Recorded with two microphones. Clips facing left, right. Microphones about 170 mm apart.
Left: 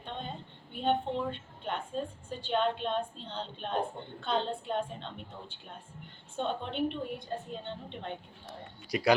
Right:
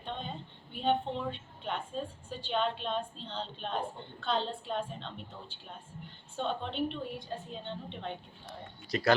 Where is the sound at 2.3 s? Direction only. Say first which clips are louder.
Left 2 dB; 50° left (ahead or behind).